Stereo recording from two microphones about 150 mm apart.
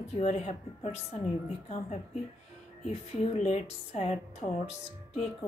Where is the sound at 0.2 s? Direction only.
45° left (ahead or behind).